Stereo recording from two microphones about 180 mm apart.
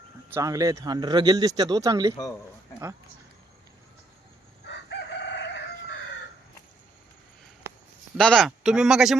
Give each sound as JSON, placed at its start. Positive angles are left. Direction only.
{"t": 0.3, "sound": "speech", "side_deg": -15}
{"t": 4.6, "sound": "chicken", "side_deg": 75}
{"t": 8.2, "sound": "speech", "side_deg": 5}